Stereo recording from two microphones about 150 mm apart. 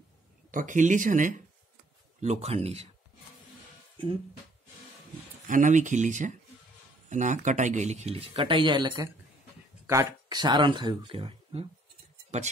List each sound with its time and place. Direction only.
0.5 s speech: 60° right (ahead or behind)
2.2 s speech: 45° right (ahead or behind)
5.5 s speech: 55° right (ahead or behind); by 11.6 s 35° right (ahead or behind)